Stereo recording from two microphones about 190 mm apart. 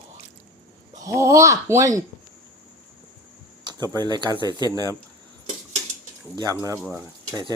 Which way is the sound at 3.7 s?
20° right (ahead or behind).